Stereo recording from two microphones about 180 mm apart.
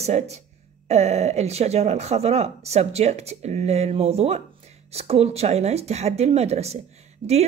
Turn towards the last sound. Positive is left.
turn(degrees=-35)  # may be behind; listen again after turning